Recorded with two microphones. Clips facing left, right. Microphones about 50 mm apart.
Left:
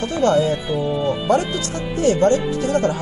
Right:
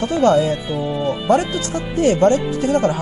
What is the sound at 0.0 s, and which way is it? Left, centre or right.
Speech, right.